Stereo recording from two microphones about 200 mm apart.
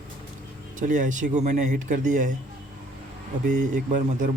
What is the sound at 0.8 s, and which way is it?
Speech, 40° right (ahead or behind).